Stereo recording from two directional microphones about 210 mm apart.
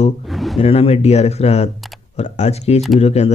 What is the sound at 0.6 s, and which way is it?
Speech, 30° left (ahead or behind).